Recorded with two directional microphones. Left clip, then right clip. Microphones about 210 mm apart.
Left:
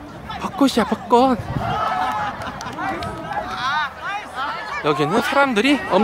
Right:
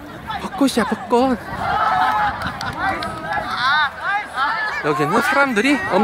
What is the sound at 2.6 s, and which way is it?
Run, 25° left (ahead or behind).